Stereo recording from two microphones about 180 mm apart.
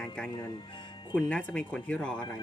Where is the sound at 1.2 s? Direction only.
5° left (ahead or behind).